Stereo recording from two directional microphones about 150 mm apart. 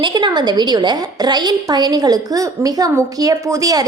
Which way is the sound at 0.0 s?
30° right (ahead or behind).